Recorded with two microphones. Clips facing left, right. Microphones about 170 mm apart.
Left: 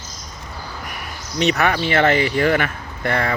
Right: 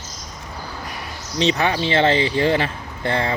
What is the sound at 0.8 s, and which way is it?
Speech, 25° right (ahead or behind).